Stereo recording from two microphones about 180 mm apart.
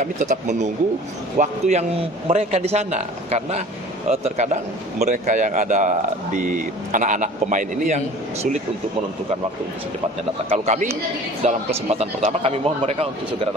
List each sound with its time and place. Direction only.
0.0 s a man's voice: 40° right (ahead or behind)
10.5 s a man's voice: 40° right (ahead or behind)